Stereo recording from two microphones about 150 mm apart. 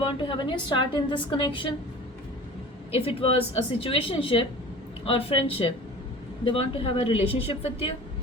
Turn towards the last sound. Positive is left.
turn(degrees=40)  # may be behind; listen again after turning